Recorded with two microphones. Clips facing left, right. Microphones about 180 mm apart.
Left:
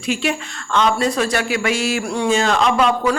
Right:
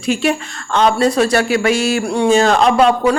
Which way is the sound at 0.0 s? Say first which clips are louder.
Right 5 dB; 40° right (ahead or behind).